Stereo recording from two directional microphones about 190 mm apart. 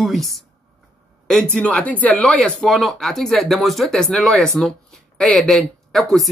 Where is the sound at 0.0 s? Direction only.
Centre (ahead or behind).